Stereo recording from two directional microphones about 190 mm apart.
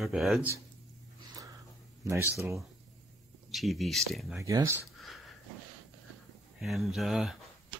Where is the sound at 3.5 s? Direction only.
Centre (ahead or behind).